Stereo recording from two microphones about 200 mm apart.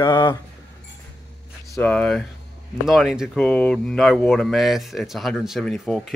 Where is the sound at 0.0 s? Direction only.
20° left (ahead or behind).